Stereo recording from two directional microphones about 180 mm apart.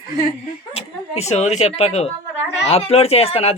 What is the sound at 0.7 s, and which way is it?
Speech, 35° left (ahead or behind).